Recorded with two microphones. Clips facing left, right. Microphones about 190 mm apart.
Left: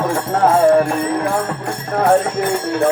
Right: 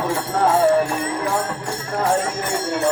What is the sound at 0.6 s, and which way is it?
Music, 55° left (ahead or behind).